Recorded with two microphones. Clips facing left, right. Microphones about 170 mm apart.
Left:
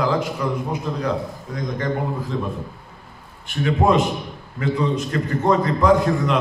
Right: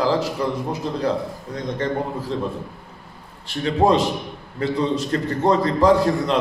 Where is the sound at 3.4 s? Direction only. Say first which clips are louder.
Right 1 dB; 30° right (ahead or behind).